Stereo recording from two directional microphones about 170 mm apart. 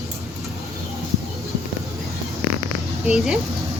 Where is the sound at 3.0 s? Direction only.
Centre (ahead or behind).